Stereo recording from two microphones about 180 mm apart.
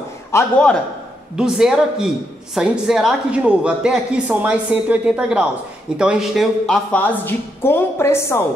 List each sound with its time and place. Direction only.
0.3 s a man's voice: 15° left (ahead or behind)
1.3 s a woman's voice: 5° right (ahead or behind); by 8.5 s 15° left (ahead or behind)